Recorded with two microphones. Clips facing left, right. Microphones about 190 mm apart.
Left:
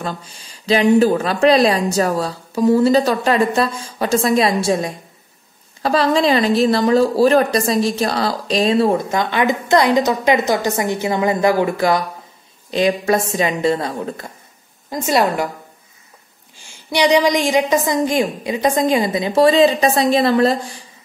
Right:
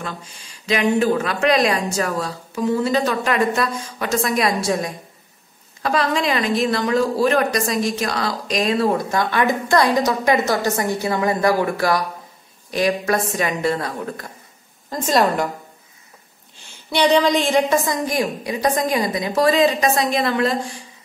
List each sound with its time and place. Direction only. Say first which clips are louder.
0.7 s a woman's voice: left 5 dB; 35° left (ahead or behind)
14.9 s a woman's voice: left 1 dB; 10° left (ahead or behind)
16.9 s speech: left 2 dB; 15° left (ahead or behind); by 20.5 s 35° left (ahead or behind)